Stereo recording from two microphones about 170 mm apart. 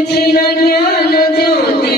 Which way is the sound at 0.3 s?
65° left (ahead or behind).